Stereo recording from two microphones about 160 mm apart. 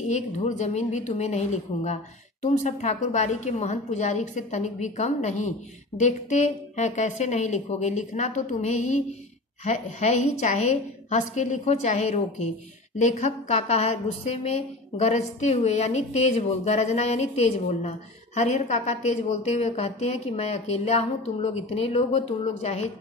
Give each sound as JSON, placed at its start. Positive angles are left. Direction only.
{"t": 0.0, "sound": "a woman's voice", "side_deg": 50}
{"t": 15.0, "sound": "a woman's voice", "side_deg": 45}